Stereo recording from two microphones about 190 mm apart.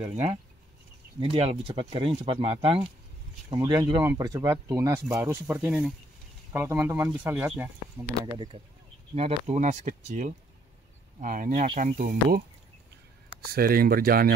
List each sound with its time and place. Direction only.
0.1 s speech: 35° right (ahead or behind); by 8.1 s 10° right (ahead or behind)
9.1 s speech: 35° right (ahead or behind); by 14.3 s 50° right (ahead or behind)